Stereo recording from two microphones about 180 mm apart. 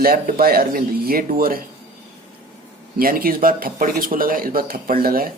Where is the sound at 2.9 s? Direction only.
55° right (ahead or behind).